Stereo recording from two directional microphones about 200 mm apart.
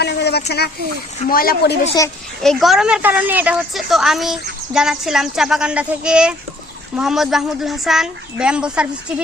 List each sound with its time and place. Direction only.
0.0 s speech: 55° left (ahead or behind)
2.4 s a woman's voice: centre (ahead or behind)